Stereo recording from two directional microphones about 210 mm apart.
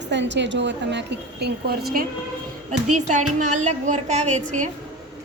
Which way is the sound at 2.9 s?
35° right (ahead or behind).